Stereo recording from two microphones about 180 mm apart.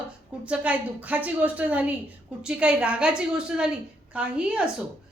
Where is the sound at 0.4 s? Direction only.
5° right (ahead or behind).